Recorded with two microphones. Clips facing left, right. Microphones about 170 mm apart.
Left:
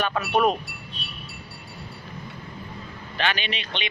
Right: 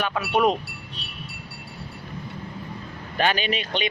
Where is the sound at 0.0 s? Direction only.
10° right (ahead or behind).